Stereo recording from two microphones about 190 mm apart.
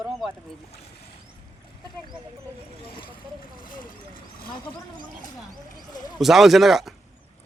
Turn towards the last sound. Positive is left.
turn(degrees=0)  # may be behind; listen again after turning